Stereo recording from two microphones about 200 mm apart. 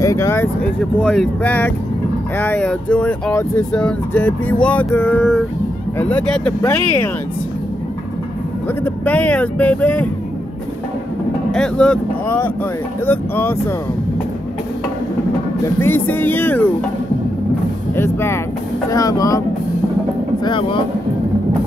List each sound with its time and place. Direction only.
0.0 s a sound: 15° left (ahead or behind)
1.0 s speech: 5° left (ahead or behind)
8.8 s speech: 10° left (ahead or behind)
11.5 s speech: 5° left (ahead or behind)
15.8 s speech: 10° left (ahead or behind)
17.9 s speech: 10° left (ahead or behind)
20.4 s speech: 25° left (ahead or behind)